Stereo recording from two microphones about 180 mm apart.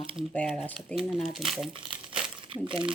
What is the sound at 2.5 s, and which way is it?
Speech, 30° right (ahead or behind).